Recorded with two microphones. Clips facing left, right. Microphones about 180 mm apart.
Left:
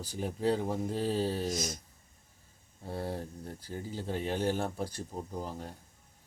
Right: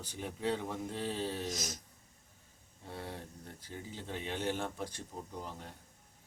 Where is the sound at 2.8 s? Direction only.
40° left (ahead or behind).